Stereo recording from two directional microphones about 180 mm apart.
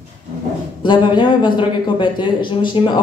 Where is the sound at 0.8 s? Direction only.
25° left (ahead or behind).